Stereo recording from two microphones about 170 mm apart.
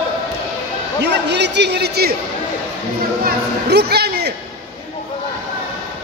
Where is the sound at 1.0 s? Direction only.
90° right; by 2.1 s 75° right (ahead or behind).